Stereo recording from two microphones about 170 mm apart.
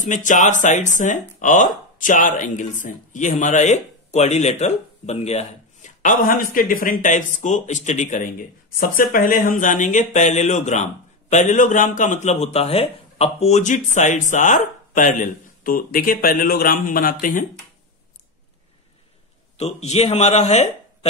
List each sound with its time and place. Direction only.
0.0 s speech: 50° left (ahead or behind)
19.5 s speech: 40° left (ahead or behind)